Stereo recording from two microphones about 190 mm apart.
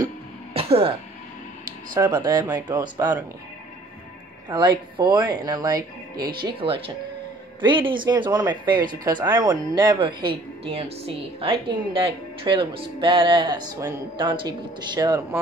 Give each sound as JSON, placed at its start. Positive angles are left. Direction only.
{"t": 0.5, "sound": "music", "side_deg": -30}
{"t": 2.0, "sound": "speech", "side_deg": -20}
{"t": 4.5, "sound": "speech", "side_deg": -25}